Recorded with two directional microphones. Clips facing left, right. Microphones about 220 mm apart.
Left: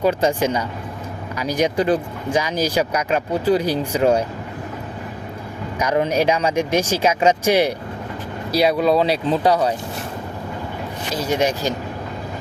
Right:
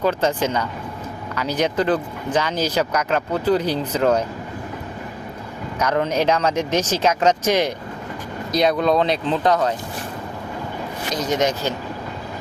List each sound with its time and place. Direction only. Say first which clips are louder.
0.0 s speech: left 2 dB; 10° left (ahead or behind)
5.8 s speech: left 1 dB; 10° left (ahead or behind)
11.1 s speech: left 1 dB; 10° left (ahead or behind)